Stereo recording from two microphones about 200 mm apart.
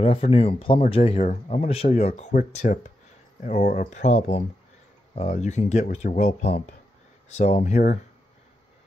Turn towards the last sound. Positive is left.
turn(degrees=35)  # may be behind; listen again after turning